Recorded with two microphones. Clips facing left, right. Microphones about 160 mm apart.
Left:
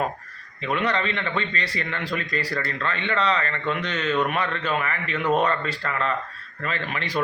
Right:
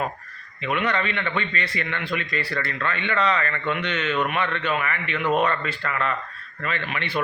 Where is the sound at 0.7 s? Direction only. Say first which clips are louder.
Even; 35° left (ahead or behind).